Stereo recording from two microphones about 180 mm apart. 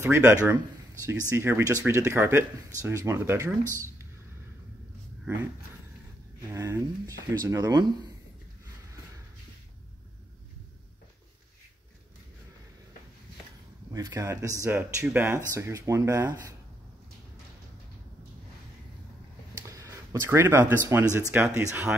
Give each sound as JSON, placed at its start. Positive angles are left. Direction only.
{"t": 0.0, "sound": "speech", "side_deg": -15}
{"t": 6.4, "sound": "speech", "side_deg": -15}
{"t": 13.9, "sound": "speech", "side_deg": -20}
{"t": 19.7, "sound": "speech", "side_deg": -15}